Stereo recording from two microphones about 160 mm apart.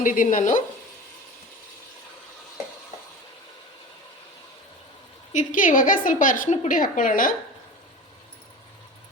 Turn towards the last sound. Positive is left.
turn(degrees=60)  # may be behind; listen again after turning